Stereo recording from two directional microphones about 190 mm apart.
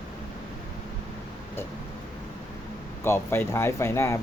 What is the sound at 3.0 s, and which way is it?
Speech, 10° left (ahead or behind).